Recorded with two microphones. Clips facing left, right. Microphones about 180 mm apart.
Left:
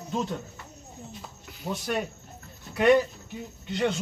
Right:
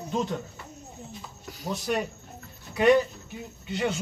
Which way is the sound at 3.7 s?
5° right (ahead or behind).